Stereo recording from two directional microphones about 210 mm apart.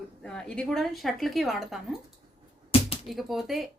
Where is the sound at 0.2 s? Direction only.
5° left (ahead or behind).